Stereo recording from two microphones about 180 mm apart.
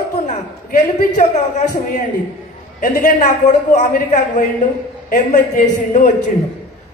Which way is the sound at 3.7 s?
45° left (ahead or behind).